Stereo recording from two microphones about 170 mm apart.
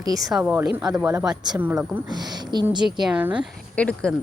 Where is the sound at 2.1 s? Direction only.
25° right (ahead or behind).